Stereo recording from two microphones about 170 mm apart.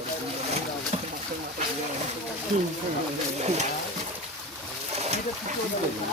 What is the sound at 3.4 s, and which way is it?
Speech, 40° right (ahead or behind).